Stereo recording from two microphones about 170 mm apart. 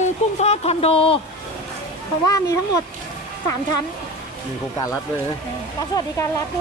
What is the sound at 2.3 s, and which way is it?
Speech, 20° left (ahead or behind).